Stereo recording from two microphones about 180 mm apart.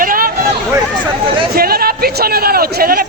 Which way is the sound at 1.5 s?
55° right (ahead or behind).